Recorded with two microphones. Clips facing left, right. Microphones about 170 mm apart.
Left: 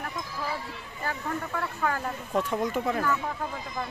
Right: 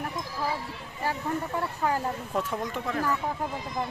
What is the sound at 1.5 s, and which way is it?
Speech, 25° right (ahead or behind).